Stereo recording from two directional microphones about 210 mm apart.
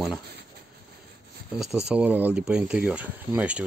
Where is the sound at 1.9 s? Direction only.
5° right (ahead or behind).